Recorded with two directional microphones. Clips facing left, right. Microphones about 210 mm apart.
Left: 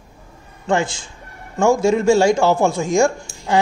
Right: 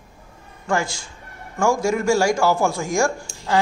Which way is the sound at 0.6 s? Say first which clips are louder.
Left 4 dB; 20° left (ahead or behind).